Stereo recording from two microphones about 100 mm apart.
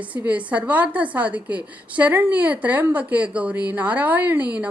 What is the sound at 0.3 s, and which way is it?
A woman's voice, 15° right (ahead or behind).